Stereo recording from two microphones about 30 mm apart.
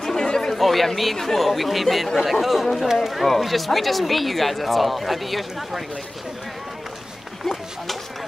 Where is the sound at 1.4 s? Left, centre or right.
Centre.